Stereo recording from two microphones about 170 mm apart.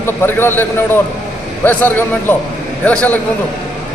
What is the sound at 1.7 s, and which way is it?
A man's voice, 10° left (ahead or behind).